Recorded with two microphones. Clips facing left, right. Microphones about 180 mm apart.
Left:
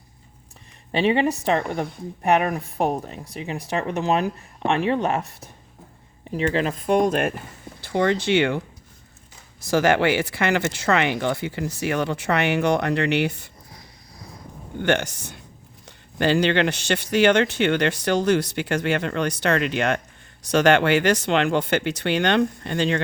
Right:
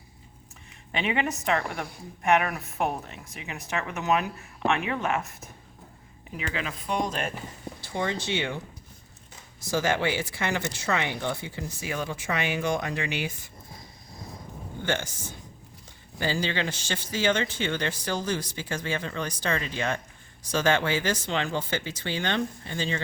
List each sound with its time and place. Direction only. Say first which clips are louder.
0.9 s speech: left 8 dB; 30° left (ahead or behind); by 8.6 s 65° left (ahead or behind)
9.6 s speech: left 7 dB; 70° left (ahead or behind)
13.7 s a sound: right 1 dB; 25° right (ahead or behind)
14.8 s speech: left 8 dB; 70° left (ahead or behind)